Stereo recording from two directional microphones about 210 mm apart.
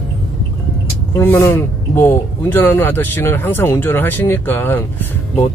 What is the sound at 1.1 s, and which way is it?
Speech, 10° left (ahead or behind).